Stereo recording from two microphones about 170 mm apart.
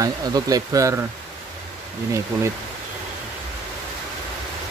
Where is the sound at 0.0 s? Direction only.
20° right (ahead or behind).